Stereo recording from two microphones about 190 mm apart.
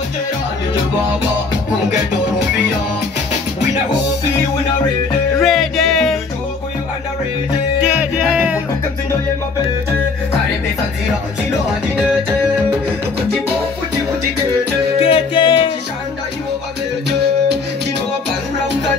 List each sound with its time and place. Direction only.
5.4 s music: centre (ahead or behind)
7.8 s music: 5° right (ahead or behind)
15.0 s music: 30° left (ahead or behind)